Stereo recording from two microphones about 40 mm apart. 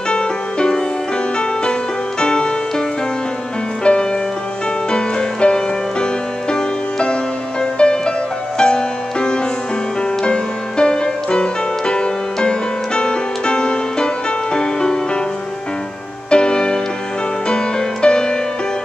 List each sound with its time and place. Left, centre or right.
0.1 s music: left
3.8 s music: left
16.3 s music: left